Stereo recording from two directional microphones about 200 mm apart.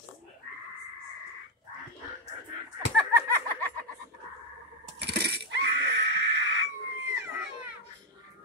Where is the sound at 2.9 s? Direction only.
10° left (ahead or behind).